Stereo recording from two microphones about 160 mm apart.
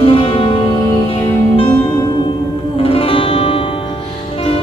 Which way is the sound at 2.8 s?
35° left (ahead or behind).